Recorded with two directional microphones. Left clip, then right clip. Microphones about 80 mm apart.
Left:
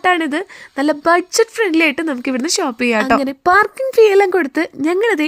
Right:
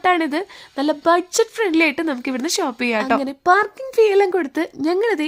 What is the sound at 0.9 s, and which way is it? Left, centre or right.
Speech, left.